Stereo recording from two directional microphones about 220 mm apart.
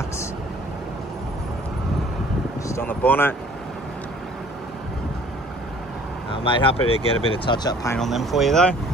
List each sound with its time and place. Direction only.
2.7 s speech: 10° left (ahead or behind)
6.3 s speech: 25° left (ahead or behind)
8.0 s speech: centre (ahead or behind)